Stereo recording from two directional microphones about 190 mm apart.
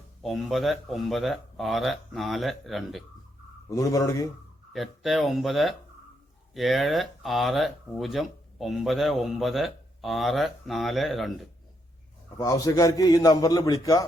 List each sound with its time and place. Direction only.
0.2 s speech: centre (ahead or behind)
3.7 s speech: 20° left (ahead or behind)
4.7 s speech: centre (ahead or behind)
12.4 s a man's voice: 20° left (ahead or behind)